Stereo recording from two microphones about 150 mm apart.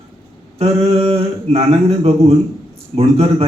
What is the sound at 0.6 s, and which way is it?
A man's voice, 45° right (ahead or behind).